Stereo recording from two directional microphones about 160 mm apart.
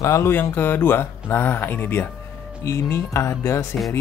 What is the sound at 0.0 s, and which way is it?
Speech, 15° left (ahead or behind).